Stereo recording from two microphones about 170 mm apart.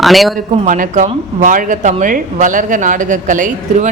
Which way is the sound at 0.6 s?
50° right (ahead or behind).